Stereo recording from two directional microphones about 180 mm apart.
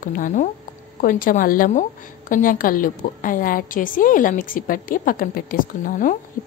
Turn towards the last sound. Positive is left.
turn(degrees=50)  # may be behind; listen again after turning